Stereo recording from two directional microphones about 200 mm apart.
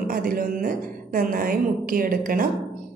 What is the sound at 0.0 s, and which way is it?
A woman's voice, 45° right (ahead or behind).